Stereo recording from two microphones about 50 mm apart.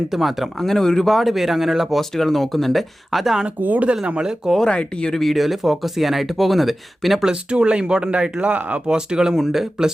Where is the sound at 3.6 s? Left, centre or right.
Right.